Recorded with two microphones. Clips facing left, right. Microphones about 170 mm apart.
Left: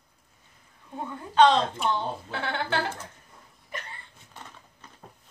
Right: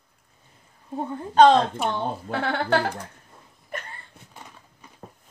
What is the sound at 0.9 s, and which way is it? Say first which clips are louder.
Speech: right 4 dB; 40° right (ahead or behind).